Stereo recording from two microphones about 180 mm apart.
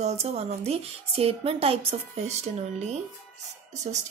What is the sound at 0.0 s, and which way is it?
A woman's voice, 35° right (ahead or behind).